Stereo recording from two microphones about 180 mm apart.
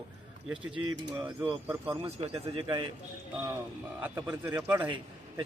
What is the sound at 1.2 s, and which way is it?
Speech, 10° right (ahead or behind).